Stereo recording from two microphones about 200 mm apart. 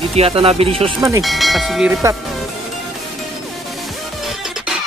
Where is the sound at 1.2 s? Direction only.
Centre (ahead or behind).